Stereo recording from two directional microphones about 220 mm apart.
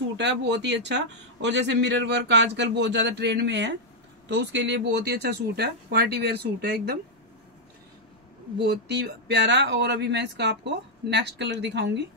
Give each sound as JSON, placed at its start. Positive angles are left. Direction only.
{"t": 0.2, "sound": "a man's voice", "side_deg": -55}
{"t": 8.6, "sound": "a man's voice", "side_deg": -50}